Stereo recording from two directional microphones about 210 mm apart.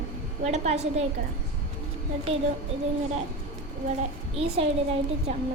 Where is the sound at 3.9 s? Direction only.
30° right (ahead or behind).